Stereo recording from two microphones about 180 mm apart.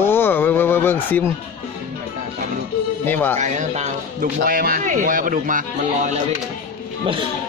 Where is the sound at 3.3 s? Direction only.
40° right (ahead or behind).